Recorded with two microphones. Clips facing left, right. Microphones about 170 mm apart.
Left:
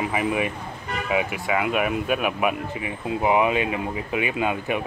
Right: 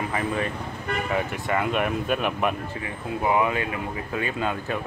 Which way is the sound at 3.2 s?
20° left (ahead or behind).